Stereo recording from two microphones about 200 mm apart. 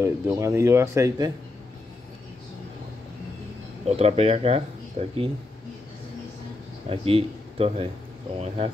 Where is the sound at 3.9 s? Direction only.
30° right (ahead or behind).